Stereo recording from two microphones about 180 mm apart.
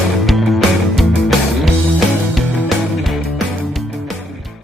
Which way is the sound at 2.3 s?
Centre (ahead or behind).